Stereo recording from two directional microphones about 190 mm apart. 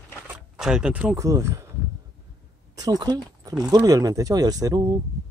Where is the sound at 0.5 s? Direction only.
5° right (ahead or behind).